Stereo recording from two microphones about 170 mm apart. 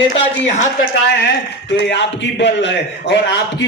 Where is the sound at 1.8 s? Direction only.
90° left.